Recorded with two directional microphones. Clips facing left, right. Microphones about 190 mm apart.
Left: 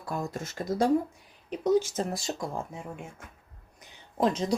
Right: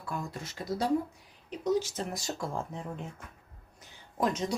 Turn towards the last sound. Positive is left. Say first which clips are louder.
# left 4 dB
turn(degrees=30)  # may be behind; listen again after turning